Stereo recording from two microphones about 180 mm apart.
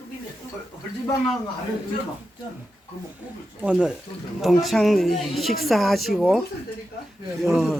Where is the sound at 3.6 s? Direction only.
5° right (ahead or behind).